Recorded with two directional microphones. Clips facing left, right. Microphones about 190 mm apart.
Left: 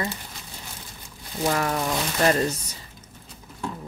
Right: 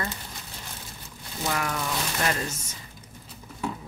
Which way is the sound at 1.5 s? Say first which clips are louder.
Left 3 dB; 35° left (ahead or behind).